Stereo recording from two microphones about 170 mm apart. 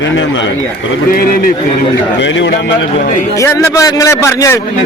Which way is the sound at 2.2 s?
90° left.